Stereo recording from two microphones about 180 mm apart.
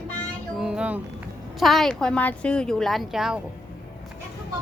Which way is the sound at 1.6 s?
Centre (ahead or behind).